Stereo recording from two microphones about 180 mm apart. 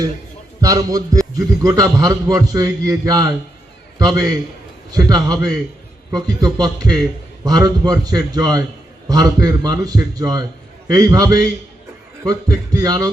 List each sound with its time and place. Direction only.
0.6 s a man's voice: 20° right (ahead or behind)